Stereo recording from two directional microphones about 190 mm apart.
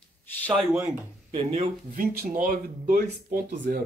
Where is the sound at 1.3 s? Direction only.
30° right (ahead or behind).